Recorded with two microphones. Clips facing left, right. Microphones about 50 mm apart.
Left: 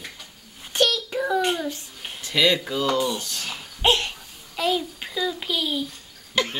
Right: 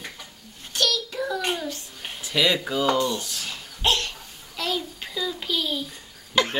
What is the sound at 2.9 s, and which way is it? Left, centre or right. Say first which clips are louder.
Speech: even; centre.